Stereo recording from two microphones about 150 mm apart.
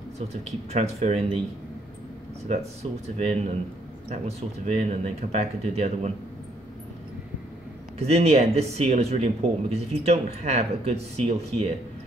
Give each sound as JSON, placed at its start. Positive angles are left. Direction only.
{"t": 0.3, "sound": "speech", "side_deg": -45}
{"t": 2.4, "sound": "speech", "side_deg": -45}
{"t": 8.0, "sound": "speech", "side_deg": -45}